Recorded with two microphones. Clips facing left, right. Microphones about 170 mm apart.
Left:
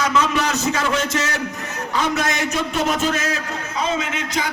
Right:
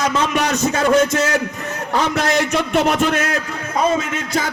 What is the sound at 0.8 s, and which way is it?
A man's voice, 55° right (ahead or behind).